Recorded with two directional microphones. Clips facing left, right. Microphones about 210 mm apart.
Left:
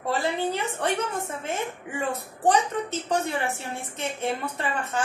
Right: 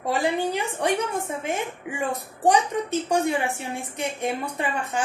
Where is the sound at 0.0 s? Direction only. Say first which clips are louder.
Right 2 dB; 15° right (ahead or behind).